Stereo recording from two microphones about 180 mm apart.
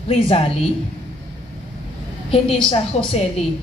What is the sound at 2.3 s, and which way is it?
Speech, 30° left (ahead or behind).